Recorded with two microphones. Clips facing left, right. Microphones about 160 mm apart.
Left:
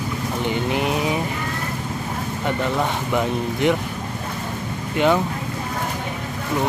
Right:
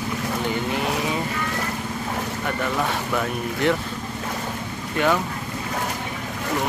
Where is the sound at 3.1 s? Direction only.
20° left (ahead or behind).